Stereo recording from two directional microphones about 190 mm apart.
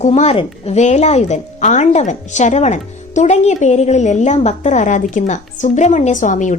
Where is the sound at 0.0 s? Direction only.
35° left (ahead or behind).